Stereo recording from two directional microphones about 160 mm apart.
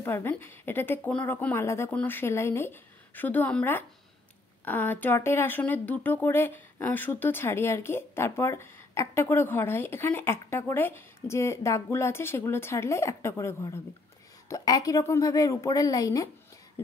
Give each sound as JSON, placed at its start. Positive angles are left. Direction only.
{"t": 0.0, "sound": "a woman's voice", "side_deg": 15}